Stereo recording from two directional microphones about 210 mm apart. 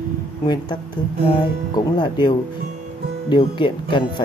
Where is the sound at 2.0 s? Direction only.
20° left (ahead or behind).